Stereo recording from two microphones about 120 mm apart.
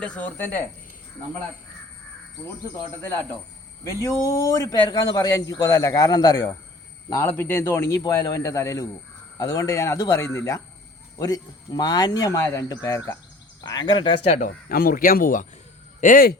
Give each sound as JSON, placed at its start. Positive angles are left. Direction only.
{"t": 0.0, "sound": "speech", "side_deg": 10}
{"t": 3.0, "sound": "a man's voice", "side_deg": 20}
{"t": 13.7, "sound": "speech", "side_deg": 40}
{"t": 16.0, "sound": "speech", "side_deg": 90}